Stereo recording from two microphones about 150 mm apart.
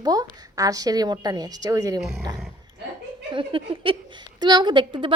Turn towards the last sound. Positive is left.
turn(degrees=-30)  # may be behind; listen again after turning